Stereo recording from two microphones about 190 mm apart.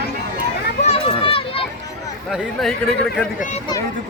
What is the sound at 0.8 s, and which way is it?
Children playing, 30° left (ahead or behind).